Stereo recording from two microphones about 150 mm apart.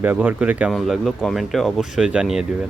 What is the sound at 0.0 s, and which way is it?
Speech, 10° right (ahead or behind).